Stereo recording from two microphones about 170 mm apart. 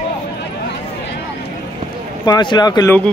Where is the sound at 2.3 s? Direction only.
25° left (ahead or behind).